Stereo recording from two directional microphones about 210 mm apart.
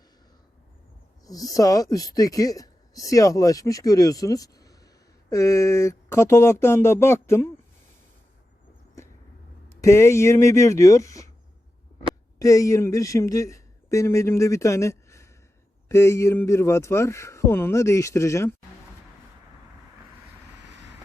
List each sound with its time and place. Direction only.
1.2 s speech: 15° left (ahead or behind)
9.8 s speech: 15° left (ahead or behind)
12.4 s a man's voice: 15° left (ahead or behind)